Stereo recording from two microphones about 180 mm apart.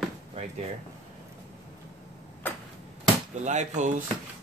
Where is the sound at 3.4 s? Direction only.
40° right (ahead or behind).